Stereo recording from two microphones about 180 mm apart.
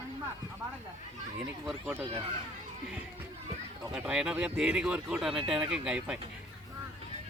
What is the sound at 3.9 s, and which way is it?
Speech, 5° right (ahead or behind).